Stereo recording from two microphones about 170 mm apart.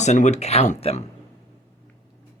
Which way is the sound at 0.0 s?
40° left (ahead or behind).